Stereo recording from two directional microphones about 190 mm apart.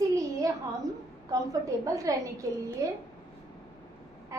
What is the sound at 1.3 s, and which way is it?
A woman's voice, 20° right (ahead or behind).